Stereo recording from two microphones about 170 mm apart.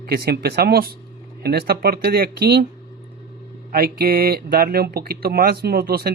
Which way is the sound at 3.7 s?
60° right (ahead or behind).